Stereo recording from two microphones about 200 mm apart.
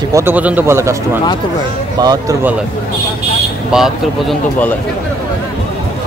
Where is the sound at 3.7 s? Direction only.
Centre (ahead or behind).